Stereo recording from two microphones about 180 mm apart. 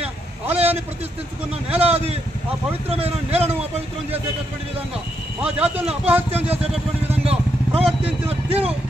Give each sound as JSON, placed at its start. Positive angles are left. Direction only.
{"t": 0.0, "sound": "a sound", "side_deg": -35}
{"t": 1.7, "sound": "speech", "side_deg": -35}
{"t": 5.4, "sound": "speech", "side_deg": -5}
{"t": 6.5, "sound": "speech", "side_deg": -35}